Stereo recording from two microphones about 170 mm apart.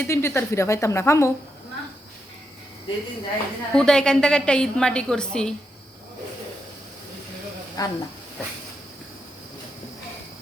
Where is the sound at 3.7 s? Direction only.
5° left (ahead or behind).